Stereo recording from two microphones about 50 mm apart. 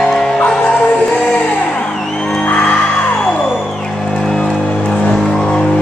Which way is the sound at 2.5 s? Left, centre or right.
Left.